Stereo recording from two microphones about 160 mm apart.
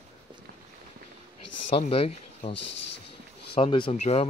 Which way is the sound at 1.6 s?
50° left (ahead or behind).